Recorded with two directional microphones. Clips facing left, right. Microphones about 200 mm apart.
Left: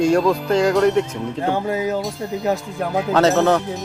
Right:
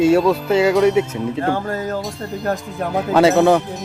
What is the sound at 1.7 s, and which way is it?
Speech, 10° left (ahead or behind).